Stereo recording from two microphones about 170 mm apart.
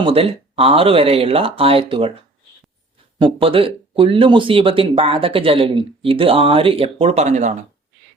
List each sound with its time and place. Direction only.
0.0 s speech: 35° right (ahead or behind)
3.2 s speech: 30° right (ahead or behind)